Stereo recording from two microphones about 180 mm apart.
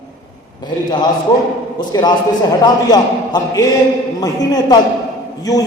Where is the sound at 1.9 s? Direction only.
20° left (ahead or behind).